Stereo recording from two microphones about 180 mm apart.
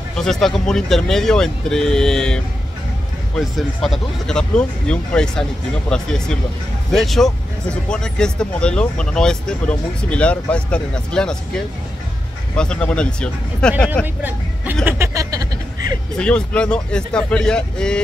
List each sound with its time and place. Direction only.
0.2 s speech: centre (ahead or behind)
14.0 s speech: 10° right (ahead or behind)
14.9 s a sound: 15° right (ahead or behind)
16.2 s speech: 5° left (ahead or behind)